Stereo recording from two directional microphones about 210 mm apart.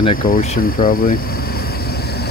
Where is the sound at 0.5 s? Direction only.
45° left (ahead or behind).